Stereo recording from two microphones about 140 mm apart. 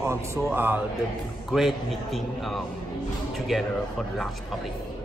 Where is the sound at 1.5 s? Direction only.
Centre (ahead or behind).